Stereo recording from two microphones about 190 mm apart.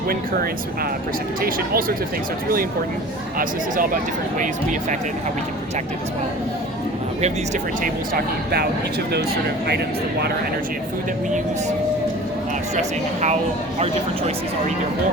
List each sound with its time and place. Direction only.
1.4 s speech: 50° right (ahead or behind)
4.4 s speech: 40° right (ahead or behind)
7.2 s speech: 35° right (ahead or behind)
9.6 s speech: 60° right (ahead or behind)
13.7 s speech: 35° right (ahead or behind)